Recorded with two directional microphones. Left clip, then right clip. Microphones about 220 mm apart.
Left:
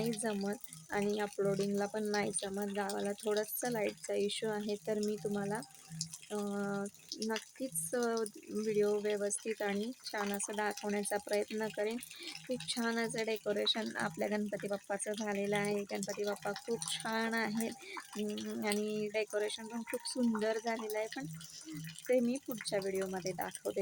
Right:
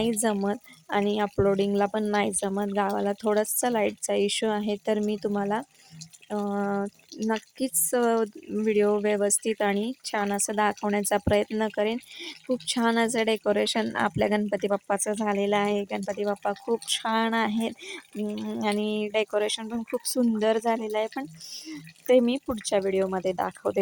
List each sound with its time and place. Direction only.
0.0 s speech: 40° right (ahead or behind)
22.7 s speech: 35° right (ahead or behind)